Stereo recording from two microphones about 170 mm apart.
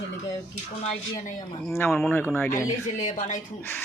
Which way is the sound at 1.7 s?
15° left (ahead or behind).